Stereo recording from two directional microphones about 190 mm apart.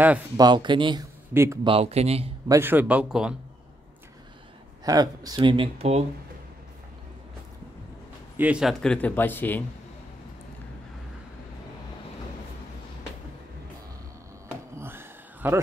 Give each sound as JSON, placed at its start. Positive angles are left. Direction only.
{"t": 0.4, "sound": "speech", "side_deg": -25}
{"t": 1.3, "sound": "speech", "side_deg": -15}
{"t": 1.7, "sound": "speech", "side_deg": -30}
{"t": 2.4, "sound": "speech", "side_deg": -15}
{"t": 4.8, "sound": "speech", "side_deg": -20}
{"t": 8.4, "sound": "a man's voice", "side_deg": -5}
{"t": 14.8, "sound": "a sound", "side_deg": -10}